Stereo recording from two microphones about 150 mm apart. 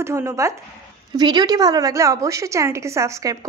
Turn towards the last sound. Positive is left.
turn(degrees=-20)  # may be behind; listen again after turning